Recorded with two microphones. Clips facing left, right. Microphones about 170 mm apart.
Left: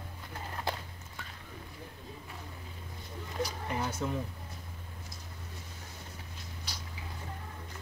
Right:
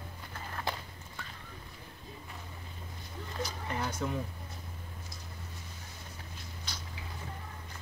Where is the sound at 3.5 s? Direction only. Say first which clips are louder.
Left 1 dB; 10° left (ahead or behind).